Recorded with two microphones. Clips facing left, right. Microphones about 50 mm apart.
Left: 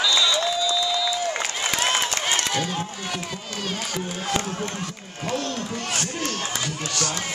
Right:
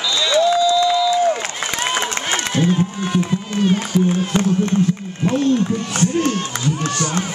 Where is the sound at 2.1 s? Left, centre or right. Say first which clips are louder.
Right 3 dB; right.